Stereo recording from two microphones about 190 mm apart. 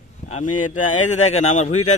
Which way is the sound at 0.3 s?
40° left (ahead or behind).